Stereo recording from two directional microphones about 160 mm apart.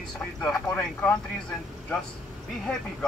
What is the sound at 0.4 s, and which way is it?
Speech, 10° left (ahead or behind).